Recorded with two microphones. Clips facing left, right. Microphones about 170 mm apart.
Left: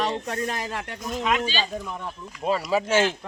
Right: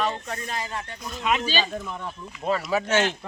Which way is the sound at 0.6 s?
75° left (ahead or behind).